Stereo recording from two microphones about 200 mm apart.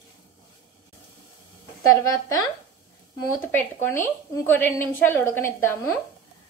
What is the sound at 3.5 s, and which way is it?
A woman's voice, 10° left (ahead or behind).